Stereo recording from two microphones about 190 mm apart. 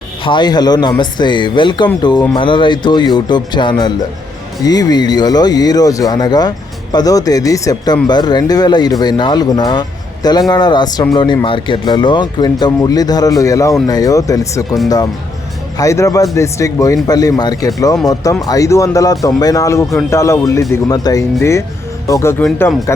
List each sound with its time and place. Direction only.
0.3 s speech: 25° left (ahead or behind)
15.8 s speech: 15° left (ahead or behind)